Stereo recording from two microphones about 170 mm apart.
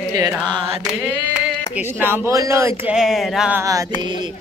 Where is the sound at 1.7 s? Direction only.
10° right (ahead or behind).